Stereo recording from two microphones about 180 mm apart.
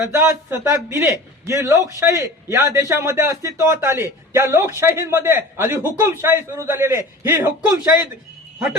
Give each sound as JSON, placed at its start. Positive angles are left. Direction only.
{"t": 0.0, "sound": "a man's voice", "side_deg": -10}